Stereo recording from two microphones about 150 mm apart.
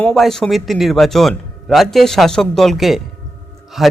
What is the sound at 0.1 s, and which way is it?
A man's voice, centre (ahead or behind).